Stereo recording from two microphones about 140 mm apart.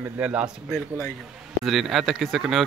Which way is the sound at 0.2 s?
10° right (ahead or behind).